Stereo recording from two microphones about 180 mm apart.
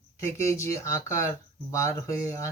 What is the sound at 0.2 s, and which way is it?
Speech, 15° left (ahead or behind).